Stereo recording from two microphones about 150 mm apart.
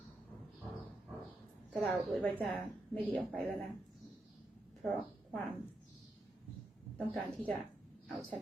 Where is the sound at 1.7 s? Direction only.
Centre (ahead or behind).